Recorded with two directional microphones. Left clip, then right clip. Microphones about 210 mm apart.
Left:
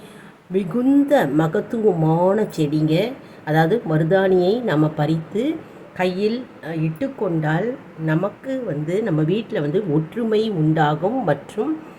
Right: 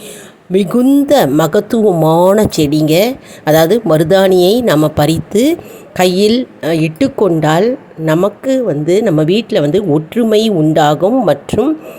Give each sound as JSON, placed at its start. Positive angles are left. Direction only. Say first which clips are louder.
{"t": 0.5, "sound": "a woman's voice", "louder": "right 8 dB", "side_deg": -45}